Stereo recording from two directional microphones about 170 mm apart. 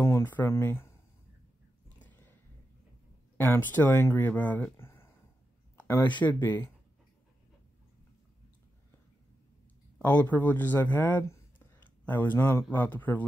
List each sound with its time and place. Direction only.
0.0 s speech: 15° left (ahead or behind)
3.3 s speech: 10° left (ahead or behind)
9.9 s a man's voice: 10° left (ahead or behind)